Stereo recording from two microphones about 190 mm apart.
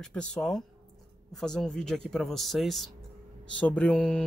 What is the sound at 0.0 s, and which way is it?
Speech, 5° left (ahead or behind).